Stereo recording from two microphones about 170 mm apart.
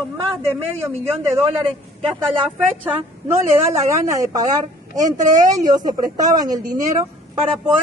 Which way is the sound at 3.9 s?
20° right (ahead or behind).